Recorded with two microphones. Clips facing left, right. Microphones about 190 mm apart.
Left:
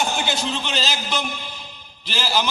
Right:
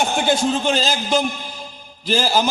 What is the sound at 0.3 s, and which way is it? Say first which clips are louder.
A man's voice: right 8 dB; 45° right (ahead or behind).